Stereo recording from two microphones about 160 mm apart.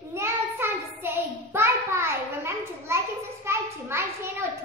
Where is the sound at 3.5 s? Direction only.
15° right (ahead or behind).